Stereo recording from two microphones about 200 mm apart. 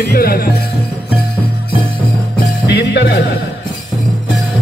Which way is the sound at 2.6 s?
60° left (ahead or behind).